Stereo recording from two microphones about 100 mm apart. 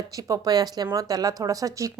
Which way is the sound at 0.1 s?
35° right (ahead or behind).